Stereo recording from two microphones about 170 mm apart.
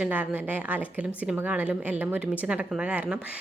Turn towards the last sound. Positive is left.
turn(degrees=-10)  # may be behind; listen again after turning